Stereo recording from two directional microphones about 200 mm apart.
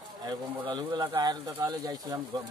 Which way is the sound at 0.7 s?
20° right (ahead or behind).